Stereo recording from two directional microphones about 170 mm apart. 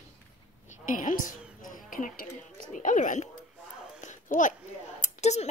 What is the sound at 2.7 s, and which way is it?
Speech, 45° left (ahead or behind).